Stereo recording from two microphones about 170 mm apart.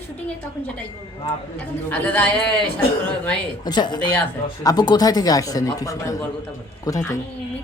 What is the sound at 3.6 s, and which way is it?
Speech, 25° left (ahead or behind).